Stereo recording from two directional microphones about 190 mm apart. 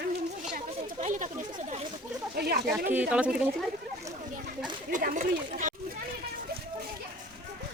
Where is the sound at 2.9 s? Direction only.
10° right (ahead or behind).